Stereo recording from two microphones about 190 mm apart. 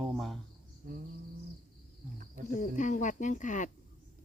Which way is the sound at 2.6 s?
40° left (ahead or behind).